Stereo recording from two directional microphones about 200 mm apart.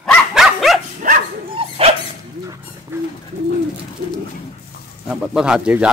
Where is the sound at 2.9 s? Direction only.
10° right (ahead or behind).